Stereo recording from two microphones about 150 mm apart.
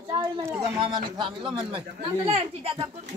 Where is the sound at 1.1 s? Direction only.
35° right (ahead or behind).